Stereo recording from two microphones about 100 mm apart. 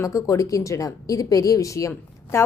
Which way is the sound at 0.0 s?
30° left (ahead or behind).